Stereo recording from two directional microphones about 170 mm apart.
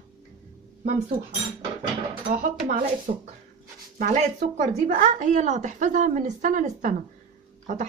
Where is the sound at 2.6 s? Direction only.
55° right (ahead or behind).